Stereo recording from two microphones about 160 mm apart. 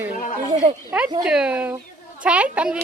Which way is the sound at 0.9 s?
5° right (ahead or behind).